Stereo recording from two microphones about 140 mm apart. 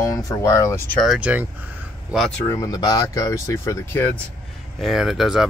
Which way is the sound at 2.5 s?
25° left (ahead or behind).